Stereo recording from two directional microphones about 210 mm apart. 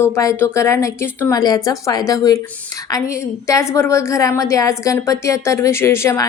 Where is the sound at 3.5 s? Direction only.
15° left (ahead or behind).